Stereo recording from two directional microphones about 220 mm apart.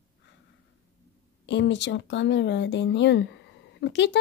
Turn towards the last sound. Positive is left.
turn(degrees=50)  # may be behind; listen again after turning